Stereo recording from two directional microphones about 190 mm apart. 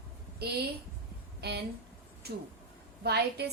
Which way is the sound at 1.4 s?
60° right (ahead or behind).